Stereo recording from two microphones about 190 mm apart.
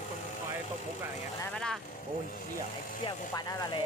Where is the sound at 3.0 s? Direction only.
20° left (ahead or behind).